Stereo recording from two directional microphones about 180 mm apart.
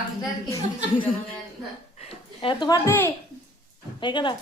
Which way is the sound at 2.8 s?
10° left (ahead or behind).